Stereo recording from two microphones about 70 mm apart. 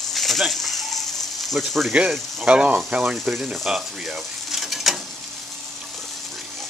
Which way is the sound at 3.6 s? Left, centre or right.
Centre.